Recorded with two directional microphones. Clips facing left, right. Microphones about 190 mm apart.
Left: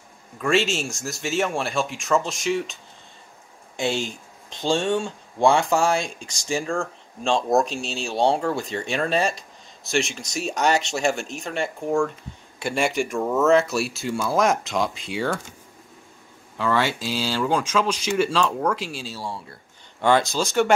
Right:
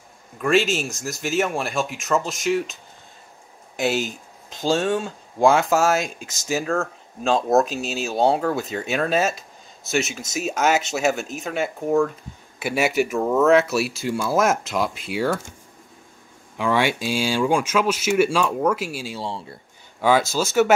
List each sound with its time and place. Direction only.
0.4 s speech: centre (ahead or behind)
16.5 s speech: 15° right (ahead or behind)
19.1 s speech: 25° right (ahead or behind)
20.0 s speech: 5° right (ahead or behind)